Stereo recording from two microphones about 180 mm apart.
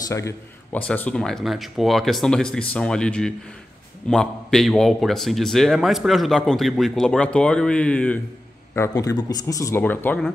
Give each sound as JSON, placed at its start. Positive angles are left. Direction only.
{"t": 0.7, "sound": "a man's voice", "side_deg": 10}